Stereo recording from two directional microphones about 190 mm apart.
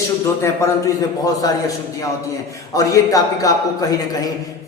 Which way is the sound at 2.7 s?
20° left (ahead or behind).